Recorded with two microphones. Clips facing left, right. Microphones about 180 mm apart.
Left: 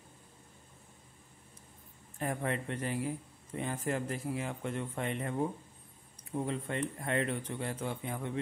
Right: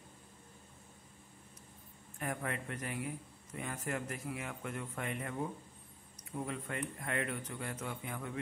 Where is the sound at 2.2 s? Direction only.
30° left (ahead or behind).